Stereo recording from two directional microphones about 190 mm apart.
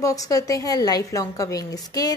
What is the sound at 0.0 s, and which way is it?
A woman's voice, 20° left (ahead or behind).